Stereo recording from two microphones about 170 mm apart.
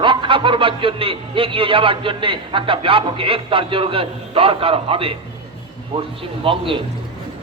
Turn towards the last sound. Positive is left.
turn(degrees=-30)  # may be behind; listen again after turning